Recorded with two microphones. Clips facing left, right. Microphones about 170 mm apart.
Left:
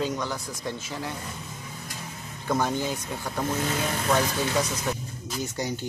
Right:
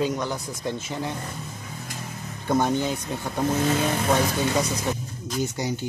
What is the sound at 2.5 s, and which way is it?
Speech, 20° right (ahead or behind).